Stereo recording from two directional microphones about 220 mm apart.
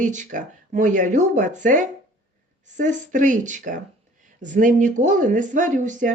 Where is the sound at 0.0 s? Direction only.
35° right (ahead or behind).